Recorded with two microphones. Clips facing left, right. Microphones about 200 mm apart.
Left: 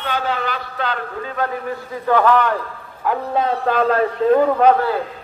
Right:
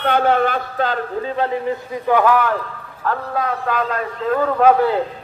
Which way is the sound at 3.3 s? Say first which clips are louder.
Left 5 dB; 30° left (ahead or behind).